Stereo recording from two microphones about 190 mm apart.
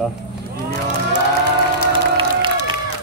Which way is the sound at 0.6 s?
40° right (ahead or behind).